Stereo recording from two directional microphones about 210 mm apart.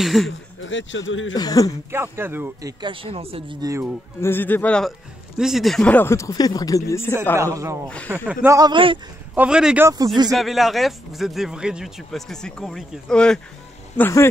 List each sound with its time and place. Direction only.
0.0 s a man's voice: centre (ahead or behind)
0.6 s speech: 65° left (ahead or behind)
1.3 s speech: 20° left (ahead or behind)
1.9 s speech: 10° right (ahead or behind)
2.8 s speech: 25° right (ahead or behind)
4.2 s speech: 10° left (ahead or behind)
7.3 s a man's voice: 15° right (ahead or behind)
8.5 s speech: 20° right (ahead or behind)
9.3 s a man's voice: 5° right (ahead or behind)
9.8 s speech: 15° right (ahead or behind)
10.3 s a man's voice: centre (ahead or behind)